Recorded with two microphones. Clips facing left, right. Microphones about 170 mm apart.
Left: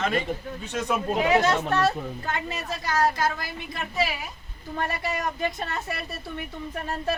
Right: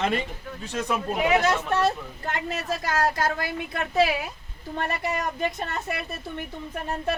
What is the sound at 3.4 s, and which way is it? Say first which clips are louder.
Speech: right 5 dB; 60° right (ahead or behind).